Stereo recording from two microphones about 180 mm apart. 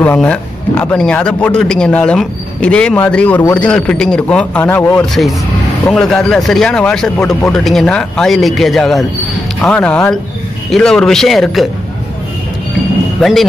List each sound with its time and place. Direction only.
0.0 s speech: 5° left (ahead or behind)
13.2 s speech: centre (ahead or behind)